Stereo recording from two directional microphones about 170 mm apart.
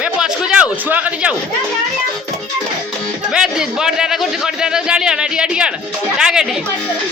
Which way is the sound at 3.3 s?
5° right (ahead or behind).